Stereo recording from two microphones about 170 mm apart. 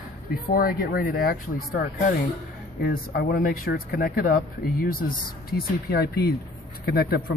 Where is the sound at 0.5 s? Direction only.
60° left (ahead or behind).